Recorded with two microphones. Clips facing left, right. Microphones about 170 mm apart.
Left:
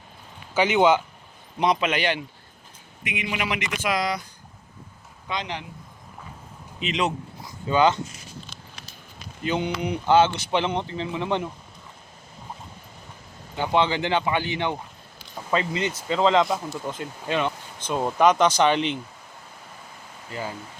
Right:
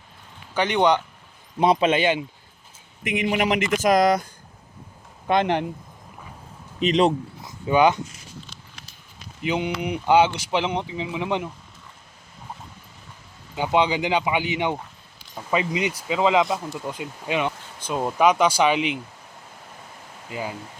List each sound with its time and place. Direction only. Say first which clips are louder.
0.5 s speech: left 1 dB; 5° left (ahead or behind)
1.5 s speech: right 4 dB; 30° right (ahead or behind)
3.1 s speech: right 7 dB; 45° right (ahead or behind)
5.3 s speech: right 11 dB; 55° right (ahead or behind)
6.7 s a man's voice: right 7 dB; 35° right (ahead or behind)
7.4 s speech: right 2 dB; 15° right (ahead or behind)
9.5 s speech: right 1 dB; 10° right (ahead or behind)
13.6 s speech: right 1 dB; 15° right (ahead or behind)